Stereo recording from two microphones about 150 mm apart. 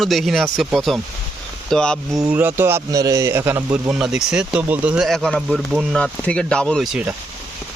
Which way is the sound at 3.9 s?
5° right (ahead or behind).